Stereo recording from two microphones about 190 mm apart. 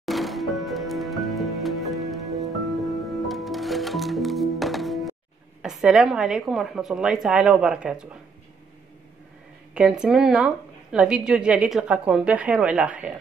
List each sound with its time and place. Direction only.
0.0 s music: centre (ahead or behind)
5.6 s a woman's voice: 5° right (ahead or behind)
9.8 s a woman's voice: 5° right (ahead or behind)